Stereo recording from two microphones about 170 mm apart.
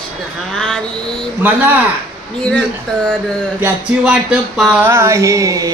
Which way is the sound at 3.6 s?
5° right (ahead or behind).